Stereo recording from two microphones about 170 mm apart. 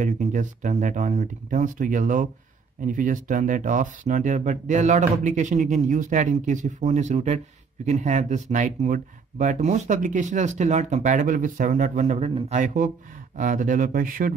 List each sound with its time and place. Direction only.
0.0 s speech: 45° right (ahead or behind)